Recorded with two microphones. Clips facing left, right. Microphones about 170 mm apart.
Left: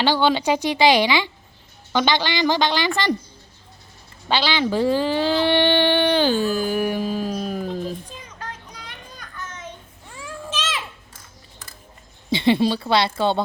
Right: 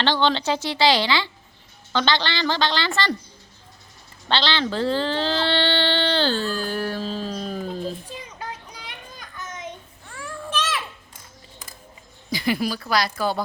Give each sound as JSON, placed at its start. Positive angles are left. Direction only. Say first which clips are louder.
{"t": 0.0, "sound": "a woman's voice", "louder": "left 2 dB", "side_deg": 10}
{"t": 4.3, "sound": "a woman's voice", "louder": "left 2 dB", "side_deg": 10}
{"t": 8.3, "sound": "children playing", "louder": "right 1 dB", "side_deg": -10}
{"t": 10.1, "sound": "a sound", "louder": "right 1 dB", "side_deg": 15}
{"t": 12.3, "sound": "speech", "louder": "left 6 dB", "side_deg": 25}